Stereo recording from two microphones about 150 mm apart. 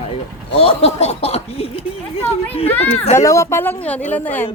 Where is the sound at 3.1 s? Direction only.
20° left (ahead or behind).